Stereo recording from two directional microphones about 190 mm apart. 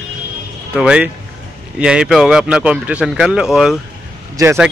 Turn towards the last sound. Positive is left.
turn(degrees=-20)  # may be behind; listen again after turning